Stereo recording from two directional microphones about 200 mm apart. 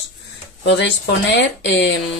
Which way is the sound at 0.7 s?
60° left (ahead or behind).